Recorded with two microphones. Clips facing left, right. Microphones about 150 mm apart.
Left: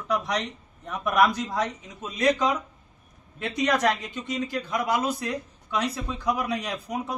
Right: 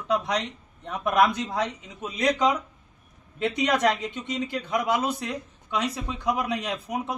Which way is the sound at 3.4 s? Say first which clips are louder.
Right 1 dB; 20° right (ahead or behind).